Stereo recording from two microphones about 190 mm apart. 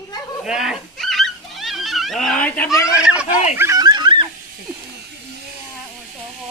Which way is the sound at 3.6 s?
15° right (ahead or behind).